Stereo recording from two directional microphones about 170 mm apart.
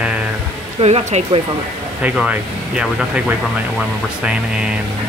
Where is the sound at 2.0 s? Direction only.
10° right (ahead or behind).